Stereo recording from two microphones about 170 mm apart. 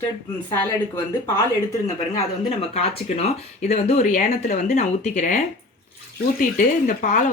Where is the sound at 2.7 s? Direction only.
40° left (ahead or behind).